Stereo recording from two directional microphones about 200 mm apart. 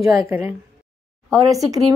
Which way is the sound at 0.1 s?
15° right (ahead or behind).